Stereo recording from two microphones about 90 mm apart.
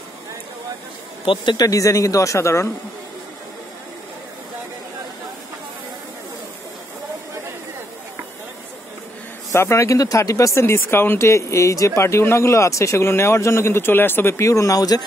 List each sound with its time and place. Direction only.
1.2 s speech: 65° left (ahead or behind)
1.7 s speech: 40° left (ahead or behind)
9.5 s speech: 30° left (ahead or behind)